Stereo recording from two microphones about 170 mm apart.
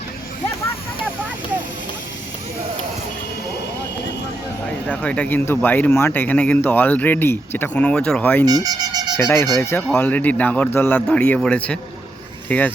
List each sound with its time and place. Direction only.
4.9 s speech: 10° left (ahead or behind)
8.4 s speech: 25° right (ahead or behind)
9.1 s speech: 15° left (ahead or behind)